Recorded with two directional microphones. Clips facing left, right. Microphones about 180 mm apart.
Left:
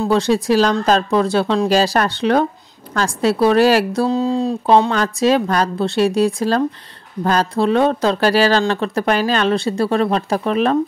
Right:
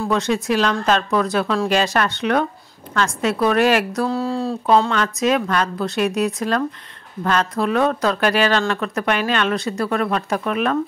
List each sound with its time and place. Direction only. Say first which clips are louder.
0.0 s speech: left 4 dB; 30° left (ahead or behind)
4.1 s speech: left 4 dB; 20° left (ahead or behind)